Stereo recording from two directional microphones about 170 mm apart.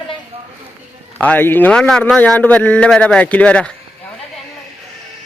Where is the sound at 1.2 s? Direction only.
10° left (ahead or behind).